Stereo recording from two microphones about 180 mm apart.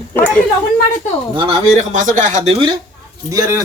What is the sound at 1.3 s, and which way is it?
Speech, 30° right (ahead or behind).